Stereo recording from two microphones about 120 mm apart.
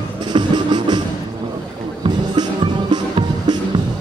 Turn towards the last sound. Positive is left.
turn(degrees=-35)  # may be behind; listen again after turning